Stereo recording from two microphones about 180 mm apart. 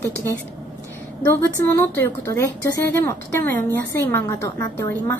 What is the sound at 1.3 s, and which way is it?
A woman's voice, 10° left (ahead or behind).